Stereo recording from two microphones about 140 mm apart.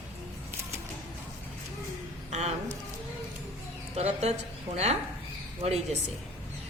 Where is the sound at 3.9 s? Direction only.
50° right (ahead or behind).